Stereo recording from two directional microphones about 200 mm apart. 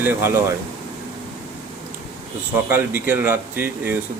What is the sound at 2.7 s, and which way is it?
Speech, 10° right (ahead or behind).